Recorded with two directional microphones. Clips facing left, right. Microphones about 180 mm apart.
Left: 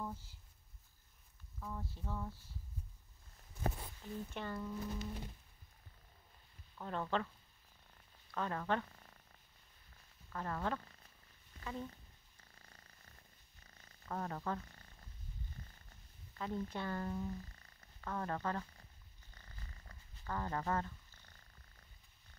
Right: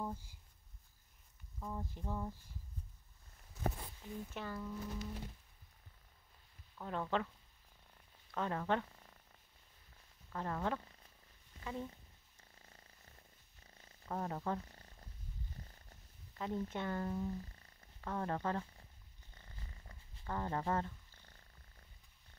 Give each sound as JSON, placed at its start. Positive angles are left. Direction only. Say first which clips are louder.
{"t": 0.0, "sound": "a sound", "louder": "right 2 dB", "side_deg": -15}
{"t": 1.6, "sound": "speech", "louder": "right 2 dB", "side_deg": -15}
{"t": 4.0, "sound": "speech", "louder": "left 1 dB", "side_deg": -10}
{"t": 6.8, "sound": "speech", "louder": "right 1 dB", "side_deg": -10}
{"t": 8.4, "sound": "speech", "louder": "right 1 dB", "side_deg": -20}
{"t": 10.3, "sound": "speech", "louder": "right 1 dB", "side_deg": -15}
{"t": 11.6, "sound": "purr", "louder": "right 1 dB", "side_deg": -15}
{"t": 14.1, "sound": "speech", "louder": "right 1 dB", "side_deg": -10}
{"t": 14.6, "sound": "purr", "louder": "right 2 dB", "side_deg": -30}
{"t": 16.3, "sound": "speech", "louder": "right 1 dB", "side_deg": -20}
{"t": 17.0, "sound": "speech", "louder": "right 2 dB", "side_deg": -10}
{"t": 17.3, "sound": "purr", "louder": "right 2 dB", "side_deg": -25}